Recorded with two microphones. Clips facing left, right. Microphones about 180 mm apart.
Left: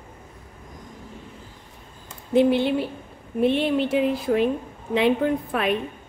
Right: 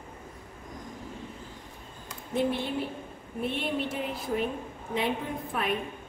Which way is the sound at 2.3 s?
75° left (ahead or behind).